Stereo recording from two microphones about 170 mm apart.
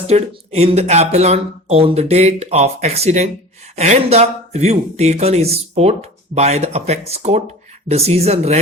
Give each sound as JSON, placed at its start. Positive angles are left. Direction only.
{"t": 0.1, "sound": "speech", "side_deg": -40}